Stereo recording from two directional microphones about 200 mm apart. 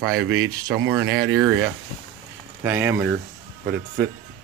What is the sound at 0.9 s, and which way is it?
Speech, 90° right.